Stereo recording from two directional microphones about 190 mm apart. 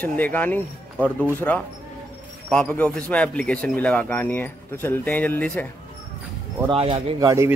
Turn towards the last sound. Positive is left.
turn(degrees=-30)  # may be behind; listen again after turning